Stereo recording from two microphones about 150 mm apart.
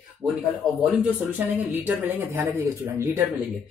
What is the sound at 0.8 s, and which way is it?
Speech, 10° right (ahead or behind).